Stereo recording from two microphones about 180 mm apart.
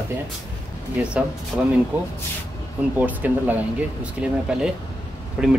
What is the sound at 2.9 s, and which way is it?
Speech, 10° right (ahead or behind).